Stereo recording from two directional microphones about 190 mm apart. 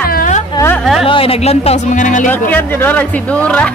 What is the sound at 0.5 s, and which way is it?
Speech, 10° left (ahead or behind).